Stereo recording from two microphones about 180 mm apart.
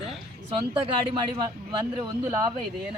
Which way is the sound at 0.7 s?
30° right (ahead or behind).